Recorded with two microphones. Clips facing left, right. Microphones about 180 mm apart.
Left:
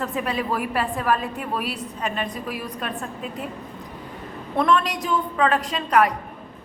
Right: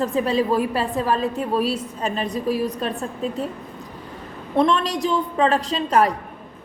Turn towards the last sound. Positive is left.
turn(degrees=-25)  # may be behind; listen again after turning